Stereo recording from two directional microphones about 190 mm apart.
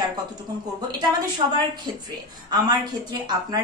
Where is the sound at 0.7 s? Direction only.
20° right (ahead or behind).